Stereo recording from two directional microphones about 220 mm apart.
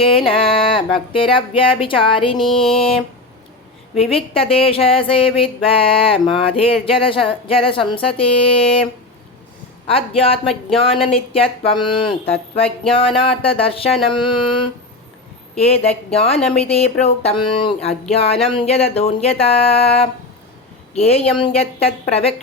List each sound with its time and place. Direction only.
0.0 s speech: 25° left (ahead or behind)
2.3 s music: centre (ahead or behind)
4.1 s speech: 25° left (ahead or behind)